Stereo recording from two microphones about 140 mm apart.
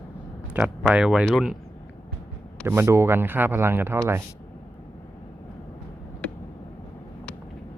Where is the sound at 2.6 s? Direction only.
20° right (ahead or behind).